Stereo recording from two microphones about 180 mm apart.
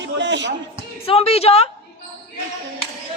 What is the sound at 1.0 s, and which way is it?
Speech, 35° left (ahead or behind).